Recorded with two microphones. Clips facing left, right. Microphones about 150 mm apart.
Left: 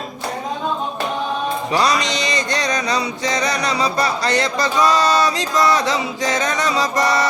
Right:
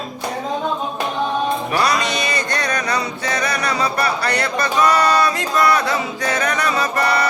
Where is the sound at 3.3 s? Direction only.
20° left (ahead or behind).